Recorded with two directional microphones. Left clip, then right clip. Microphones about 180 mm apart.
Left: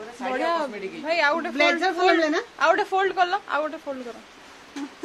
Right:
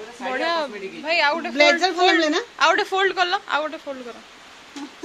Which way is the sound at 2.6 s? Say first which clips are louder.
Right 2 dB; centre (ahead or behind).